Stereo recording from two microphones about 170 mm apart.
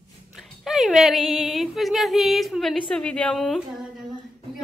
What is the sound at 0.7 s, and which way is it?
Speech, centre (ahead or behind).